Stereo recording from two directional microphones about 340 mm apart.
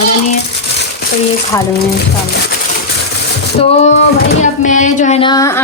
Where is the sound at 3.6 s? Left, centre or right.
Centre.